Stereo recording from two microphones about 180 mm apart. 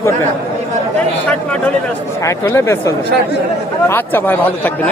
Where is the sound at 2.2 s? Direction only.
15° left (ahead or behind).